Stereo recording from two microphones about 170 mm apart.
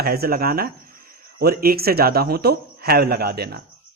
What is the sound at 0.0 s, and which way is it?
Speech, 65° right (ahead or behind).